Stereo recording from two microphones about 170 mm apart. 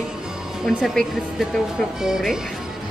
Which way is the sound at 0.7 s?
Centre (ahead or behind).